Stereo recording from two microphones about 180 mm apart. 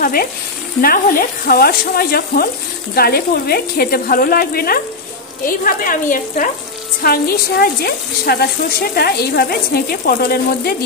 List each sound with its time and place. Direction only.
0.0 s frying: 55° left (ahead or behind)
1.4 s speech: 55° left (ahead or behind)